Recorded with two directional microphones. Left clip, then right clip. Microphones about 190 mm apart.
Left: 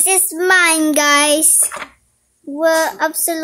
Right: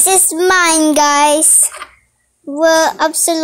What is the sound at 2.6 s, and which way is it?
Speech, 20° right (ahead or behind).